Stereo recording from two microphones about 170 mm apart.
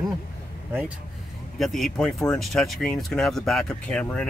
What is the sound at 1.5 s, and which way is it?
Speech, centre (ahead or behind).